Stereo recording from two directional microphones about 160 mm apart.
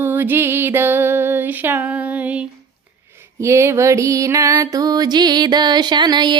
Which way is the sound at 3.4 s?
15° right (ahead or behind).